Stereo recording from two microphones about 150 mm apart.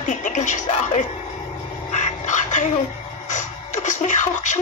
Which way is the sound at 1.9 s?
55° left (ahead or behind).